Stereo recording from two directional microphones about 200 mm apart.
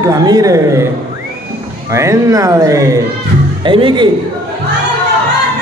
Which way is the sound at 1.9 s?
15° right (ahead or behind).